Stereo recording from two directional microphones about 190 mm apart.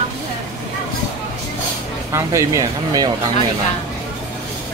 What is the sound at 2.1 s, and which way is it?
Speech, 15° right (ahead or behind).